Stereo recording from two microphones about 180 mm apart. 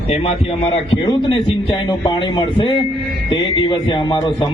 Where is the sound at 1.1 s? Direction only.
30° left (ahead or behind).